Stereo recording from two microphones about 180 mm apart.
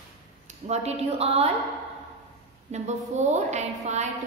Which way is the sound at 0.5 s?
35° right (ahead or behind).